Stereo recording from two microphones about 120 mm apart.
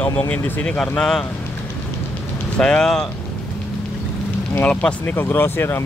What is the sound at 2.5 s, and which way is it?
Speech, 5° left (ahead or behind).